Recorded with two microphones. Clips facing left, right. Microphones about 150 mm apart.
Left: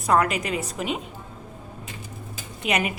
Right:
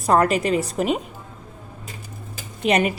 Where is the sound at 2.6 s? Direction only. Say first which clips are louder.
Right 6 dB; 35° right (ahead or behind).